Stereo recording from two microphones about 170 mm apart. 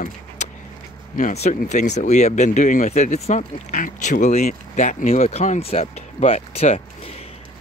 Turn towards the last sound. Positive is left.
turn(degrees=40)  # may be behind; listen again after turning